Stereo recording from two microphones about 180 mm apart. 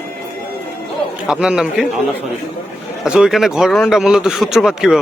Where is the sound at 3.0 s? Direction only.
5° right (ahead or behind).